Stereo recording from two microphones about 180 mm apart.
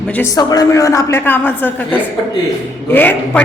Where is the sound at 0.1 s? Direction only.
15° left (ahead or behind).